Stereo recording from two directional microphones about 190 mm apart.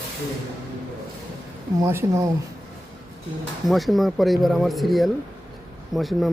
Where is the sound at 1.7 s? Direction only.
15° right (ahead or behind).